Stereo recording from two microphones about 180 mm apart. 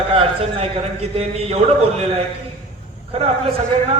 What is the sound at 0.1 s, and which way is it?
A man's voice, 35° right (ahead or behind).